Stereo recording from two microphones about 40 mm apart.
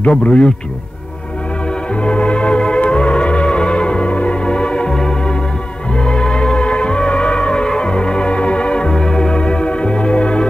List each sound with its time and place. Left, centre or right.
0.1 s speech: left
2.0 s organ: left
5.9 s music: left